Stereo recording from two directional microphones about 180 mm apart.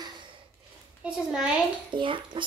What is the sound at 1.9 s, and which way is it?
Speech, 25° right (ahead or behind).